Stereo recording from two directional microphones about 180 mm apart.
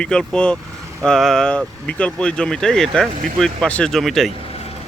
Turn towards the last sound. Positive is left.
turn(degrees=0)  # may be behind; listen again after turning